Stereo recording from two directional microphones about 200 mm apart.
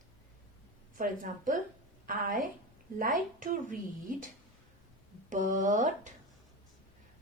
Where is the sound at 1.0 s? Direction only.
40° right (ahead or behind).